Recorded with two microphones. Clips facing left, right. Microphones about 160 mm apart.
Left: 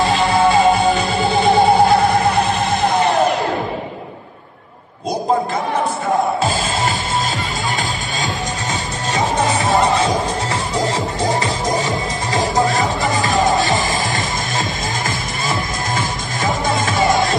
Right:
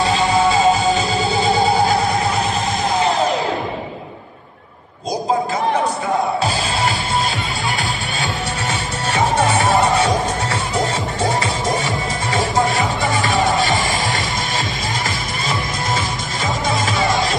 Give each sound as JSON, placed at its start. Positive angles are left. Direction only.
{"t": 0.5, "sound": "music", "side_deg": 55}
{"t": 12.3, "sound": "music", "side_deg": 40}
{"t": 16.6, "sound": "music", "side_deg": 50}